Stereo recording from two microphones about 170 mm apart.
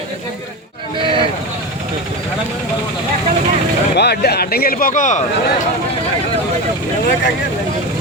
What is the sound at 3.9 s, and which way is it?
Speech, 75° left (ahead or behind).